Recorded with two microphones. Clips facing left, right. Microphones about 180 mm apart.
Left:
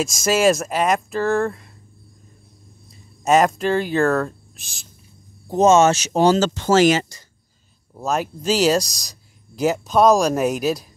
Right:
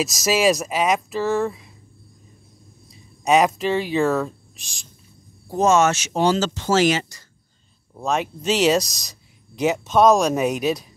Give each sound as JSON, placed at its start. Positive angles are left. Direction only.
{"t": 0.0, "sound": "speech", "side_deg": 0}
{"t": 2.9, "sound": "speech", "side_deg": 0}
{"t": 5.5, "sound": "speech", "side_deg": 25}
{"t": 7.9, "sound": "speech", "side_deg": 0}